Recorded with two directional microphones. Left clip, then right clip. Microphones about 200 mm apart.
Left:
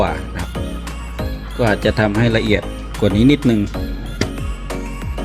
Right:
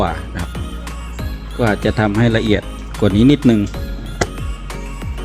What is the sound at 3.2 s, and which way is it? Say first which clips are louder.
Speech: right 1 dB; 30° right (ahead or behind).